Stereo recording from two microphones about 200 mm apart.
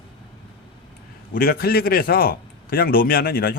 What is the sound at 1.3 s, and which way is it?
Speech, 50° left (ahead or behind).